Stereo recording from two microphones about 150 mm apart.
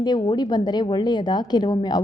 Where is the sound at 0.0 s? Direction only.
30° left (ahead or behind).